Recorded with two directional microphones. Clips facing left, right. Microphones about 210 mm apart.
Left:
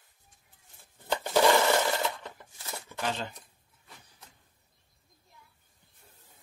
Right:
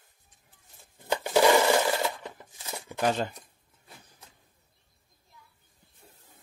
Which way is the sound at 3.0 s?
45° right (ahead or behind).